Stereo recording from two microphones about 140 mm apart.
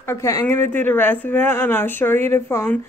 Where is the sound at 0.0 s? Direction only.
20° left (ahead or behind).